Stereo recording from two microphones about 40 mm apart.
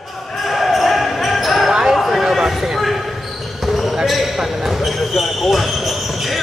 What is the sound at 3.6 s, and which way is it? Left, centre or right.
Basketball bounce, centre.